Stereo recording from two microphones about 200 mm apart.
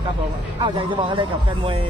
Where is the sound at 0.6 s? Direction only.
25° right (ahead or behind).